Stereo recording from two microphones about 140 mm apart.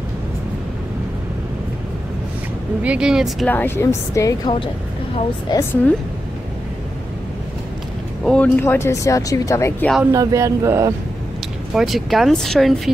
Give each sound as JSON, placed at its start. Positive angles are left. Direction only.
{"t": 2.8, "sound": "speech", "side_deg": -5}
{"t": 3.4, "sound": "speech", "side_deg": 15}
{"t": 8.2, "sound": "a sound", "side_deg": 5}
{"t": 8.5, "sound": "speech", "side_deg": 15}
{"t": 10.1, "sound": "speech", "side_deg": -20}
{"t": 11.7, "sound": "speech", "side_deg": 0}